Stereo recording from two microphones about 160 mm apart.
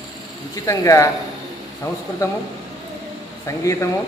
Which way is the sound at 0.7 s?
20° left (ahead or behind).